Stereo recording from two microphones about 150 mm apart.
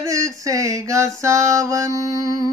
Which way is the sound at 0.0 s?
20° right (ahead or behind).